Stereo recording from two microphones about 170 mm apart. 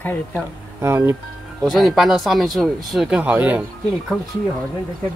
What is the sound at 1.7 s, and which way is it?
Speech, centre (ahead or behind).